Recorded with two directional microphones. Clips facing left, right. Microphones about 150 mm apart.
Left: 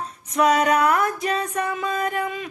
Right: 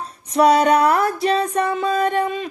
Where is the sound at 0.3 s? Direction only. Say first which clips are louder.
Right 4 dB; 35° right (ahead or behind).